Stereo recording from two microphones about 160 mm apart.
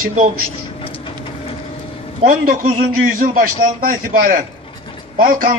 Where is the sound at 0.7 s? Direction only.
35° left (ahead or behind).